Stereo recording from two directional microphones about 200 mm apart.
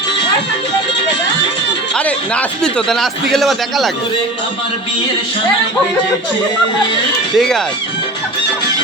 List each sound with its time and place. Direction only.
2.0 s a man's voice: 5° left (ahead or behind)
7.3 s a man's voice: centre (ahead or behind)